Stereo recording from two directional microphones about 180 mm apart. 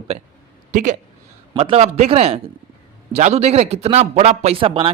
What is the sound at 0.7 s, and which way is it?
Speech, 45° right (ahead or behind).